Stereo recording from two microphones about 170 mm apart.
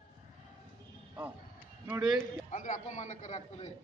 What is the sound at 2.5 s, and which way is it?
A man's voice, 45° left (ahead or behind).